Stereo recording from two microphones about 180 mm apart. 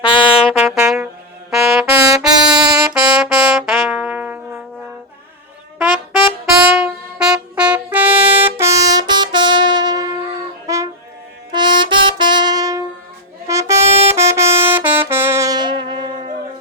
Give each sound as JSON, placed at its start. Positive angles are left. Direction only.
{"t": 0.0, "sound": "trumpet", "side_deg": 25}
{"t": 0.5, "sound": "music", "side_deg": -5}
{"t": 5.9, "sound": "trumpet", "side_deg": 30}
{"t": 6.4, "sound": "trumpet", "side_deg": -5}
{"t": 10.7, "sound": "music", "side_deg": -20}
{"t": 11.5, "sound": "brass instrument", "side_deg": -25}
{"t": 13.5, "sound": "music", "side_deg": -15}
{"t": 13.8, "sound": "brass instrument", "side_deg": -35}
{"t": 14.2, "sound": "brass instrument", "side_deg": -15}